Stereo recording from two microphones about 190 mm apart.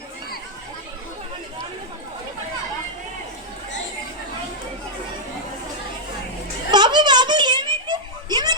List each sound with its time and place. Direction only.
6.7 s giggle: 25° right (ahead or behind)